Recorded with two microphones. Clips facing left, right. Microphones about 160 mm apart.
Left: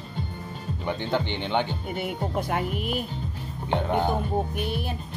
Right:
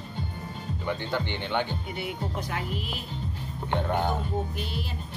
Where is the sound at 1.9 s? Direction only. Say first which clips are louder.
Left 4 dB; 50° left (ahead or behind).